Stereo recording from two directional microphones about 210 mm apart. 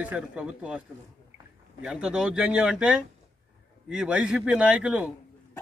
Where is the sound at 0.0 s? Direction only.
5° right (ahead or behind).